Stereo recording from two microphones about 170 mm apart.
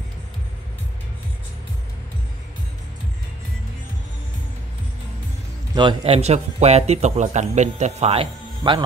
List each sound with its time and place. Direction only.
5.8 s a man's voice: 30° right (ahead or behind)